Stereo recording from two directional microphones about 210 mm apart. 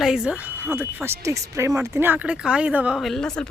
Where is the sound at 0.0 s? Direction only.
Centre (ahead or behind).